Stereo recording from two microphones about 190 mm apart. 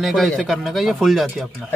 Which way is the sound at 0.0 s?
Centre (ahead or behind).